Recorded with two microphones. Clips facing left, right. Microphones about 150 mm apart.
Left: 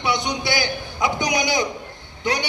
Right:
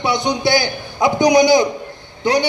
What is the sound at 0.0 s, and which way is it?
A man's voice, 35° right (ahead or behind).